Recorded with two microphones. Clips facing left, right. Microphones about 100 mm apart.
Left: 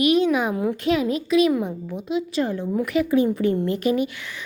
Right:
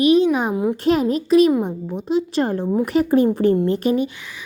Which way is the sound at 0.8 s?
40° right (ahead or behind).